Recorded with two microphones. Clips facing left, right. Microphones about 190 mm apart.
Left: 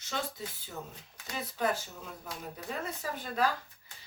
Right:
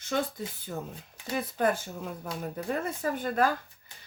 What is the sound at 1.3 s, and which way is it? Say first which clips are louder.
Speech: right 5 dB; 55° right (ahead or behind).